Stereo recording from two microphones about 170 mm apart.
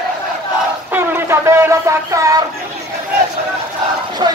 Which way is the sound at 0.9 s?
15° right (ahead or behind).